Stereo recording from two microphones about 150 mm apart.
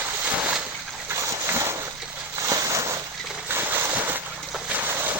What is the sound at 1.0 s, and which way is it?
Splash, 20° right (ahead or behind).